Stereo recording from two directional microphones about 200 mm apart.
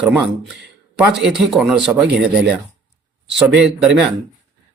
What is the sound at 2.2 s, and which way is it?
Speech, 55° right (ahead or behind).